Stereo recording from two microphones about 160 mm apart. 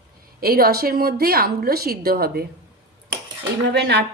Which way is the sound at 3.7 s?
90° right.